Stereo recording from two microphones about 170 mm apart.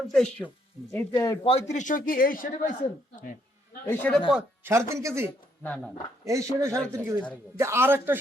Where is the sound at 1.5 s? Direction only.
40° left (ahead or behind); by 2.7 s 55° left (ahead or behind).